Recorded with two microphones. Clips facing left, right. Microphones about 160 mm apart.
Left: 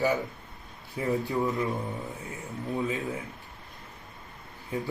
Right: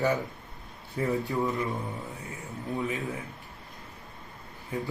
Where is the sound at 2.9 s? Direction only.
20° left (ahead or behind).